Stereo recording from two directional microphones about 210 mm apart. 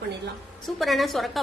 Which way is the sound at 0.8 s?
Centre (ahead or behind).